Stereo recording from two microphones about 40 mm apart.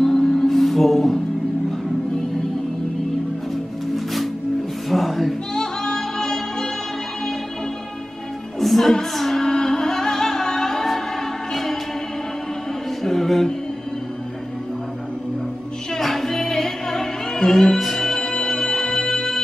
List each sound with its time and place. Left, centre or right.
0.0 s music: centre
3.9 s music: centre
5.5 s music: centre
8.5 s music: centre
13.0 s music: centre
16.0 s music: centre